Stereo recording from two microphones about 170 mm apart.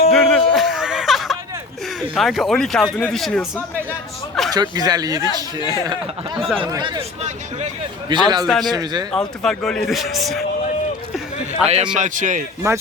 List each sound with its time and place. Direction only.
0.1 s music: 5° left (ahead or behind)
2.1 s speech: centre (ahead or behind)
4.5 s speech: 25° right (ahead or behind)
7.2 s speech: 40° right (ahead or behind)
8.1 s speech: 25° right (ahead or behind)
8.4 s speech: centre (ahead or behind)
8.7 s speech: 25° right (ahead or behind)
9.1 s speech: 5° left (ahead or behind)
11.6 s a man's voice: 40° right (ahead or behind)